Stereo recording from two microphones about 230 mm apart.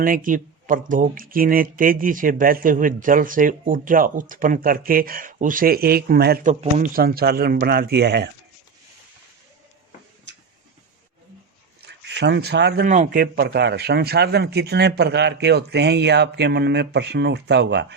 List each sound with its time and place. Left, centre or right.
0.0 s speech: right
11.9 s a man's voice: right